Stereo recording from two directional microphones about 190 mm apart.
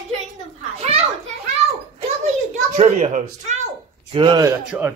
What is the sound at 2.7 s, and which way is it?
Speech, 35° right (ahead or behind).